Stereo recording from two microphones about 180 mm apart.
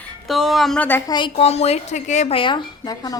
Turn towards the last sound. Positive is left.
turn(degrees=20)  # may be behind; listen again after turning